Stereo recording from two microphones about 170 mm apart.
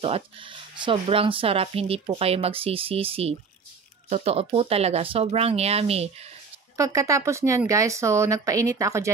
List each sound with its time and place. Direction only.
0.0 s speech: 35° right (ahead or behind)
6.8 s speech: 20° right (ahead or behind)